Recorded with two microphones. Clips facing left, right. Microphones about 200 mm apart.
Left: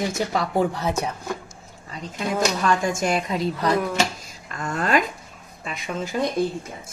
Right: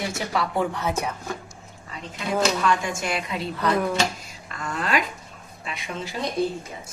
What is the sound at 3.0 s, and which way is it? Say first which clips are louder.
A woman's voice: left 5 dB; 40° left (ahead or behind).